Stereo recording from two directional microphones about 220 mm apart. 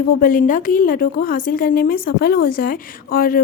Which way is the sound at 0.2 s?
40° left (ahead or behind).